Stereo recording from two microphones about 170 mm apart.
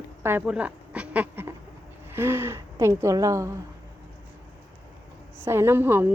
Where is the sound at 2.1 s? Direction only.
15° right (ahead or behind).